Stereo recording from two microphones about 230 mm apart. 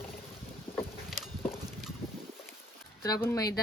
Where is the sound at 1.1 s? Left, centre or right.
Centre.